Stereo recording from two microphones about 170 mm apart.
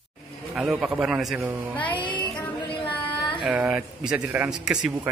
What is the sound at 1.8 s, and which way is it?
Music, 30° left (ahead or behind).